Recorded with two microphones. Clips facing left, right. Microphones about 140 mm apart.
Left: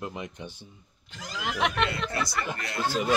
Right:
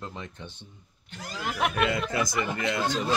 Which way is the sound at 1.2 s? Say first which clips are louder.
Even; 55° right (ahead or behind).